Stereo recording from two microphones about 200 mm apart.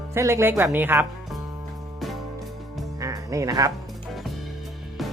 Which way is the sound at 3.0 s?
15° right (ahead or behind).